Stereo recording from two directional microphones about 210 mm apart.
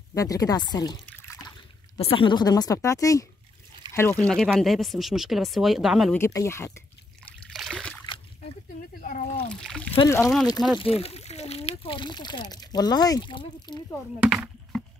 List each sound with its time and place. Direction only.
0.1 s speech: 15° left (ahead or behind)
1.0 s trickle: 10° left (ahead or behind)
2.0 s speech: 25° left (ahead or behind); by 6.1 s centre (ahead or behind)
6.1 s speech: 15° left (ahead or behind)
7.4 s trickle: centre (ahead or behind)
9.0 s speech: 40° left (ahead or behind)
9.6 s speech: centre (ahead or behind)
10.0 s speech: 10° left (ahead or behind)
10.8 s speech: 30° left (ahead or behind)